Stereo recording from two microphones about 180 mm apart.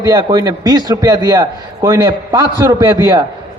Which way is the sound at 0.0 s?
20° right (ahead or behind).